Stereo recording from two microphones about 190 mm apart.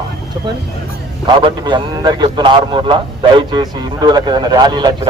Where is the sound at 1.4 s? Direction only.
25° right (ahead or behind).